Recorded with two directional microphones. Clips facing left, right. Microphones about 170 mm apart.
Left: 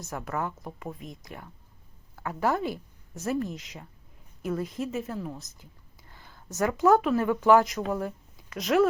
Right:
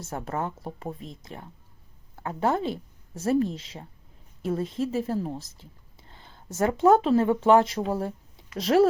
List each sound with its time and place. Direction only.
0.0 s speech: 30° right (ahead or behind)